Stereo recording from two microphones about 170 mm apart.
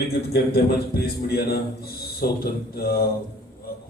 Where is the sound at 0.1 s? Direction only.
70° left (ahead or behind).